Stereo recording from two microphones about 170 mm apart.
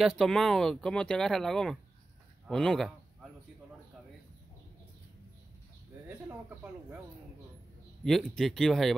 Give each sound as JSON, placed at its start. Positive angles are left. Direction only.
{"t": 0.0, "sound": "speech", "side_deg": 0}
{"t": 6.0, "sound": "speech", "side_deg": -10}
{"t": 8.0, "sound": "speech", "side_deg": 0}